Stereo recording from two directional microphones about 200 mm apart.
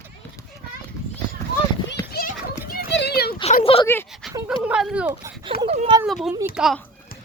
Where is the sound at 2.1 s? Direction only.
50° left (ahead or behind).